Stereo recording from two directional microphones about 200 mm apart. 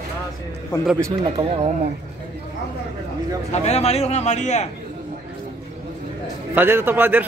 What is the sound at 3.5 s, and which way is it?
A man's voice, 35° left (ahead or behind).